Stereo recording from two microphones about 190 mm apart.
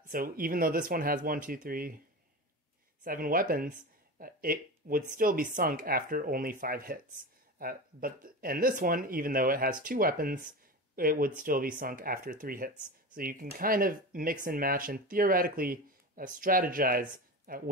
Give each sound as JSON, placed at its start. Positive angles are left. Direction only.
{"t": 0.0, "sound": "speech", "side_deg": -50}
{"t": 3.0, "sound": "speech", "side_deg": -50}